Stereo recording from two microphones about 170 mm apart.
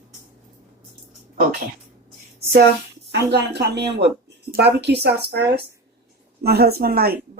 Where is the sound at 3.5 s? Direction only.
75° right (ahead or behind).